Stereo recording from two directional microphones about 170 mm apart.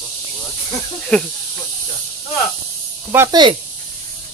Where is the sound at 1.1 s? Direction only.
5° left (ahead or behind).